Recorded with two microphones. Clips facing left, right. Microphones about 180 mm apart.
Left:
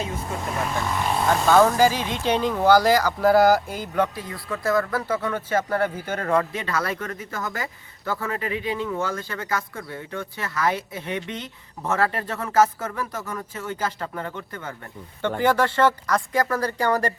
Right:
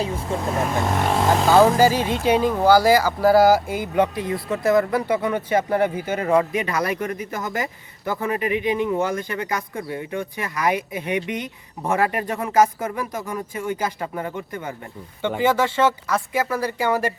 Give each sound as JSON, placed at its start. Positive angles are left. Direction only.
{"t": 0.0, "sound": "speech", "side_deg": -30}
{"t": 0.9, "sound": "speech", "side_deg": -50}
{"t": 1.1, "sound": "speech", "side_deg": -90}
{"t": 1.8, "sound": "speech", "side_deg": -10}